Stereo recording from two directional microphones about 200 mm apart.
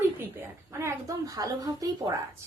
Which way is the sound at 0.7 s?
15° right (ahead or behind).